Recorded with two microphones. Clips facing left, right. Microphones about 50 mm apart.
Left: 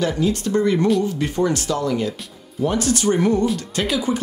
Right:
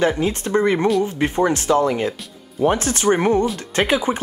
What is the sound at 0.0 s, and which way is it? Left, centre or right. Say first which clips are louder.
Speech: right 1 dB; right.